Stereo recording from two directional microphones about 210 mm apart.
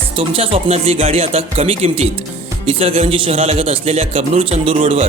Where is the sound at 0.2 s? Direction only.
25° right (ahead or behind).